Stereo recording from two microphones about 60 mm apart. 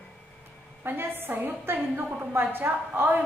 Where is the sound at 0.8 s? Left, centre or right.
Right.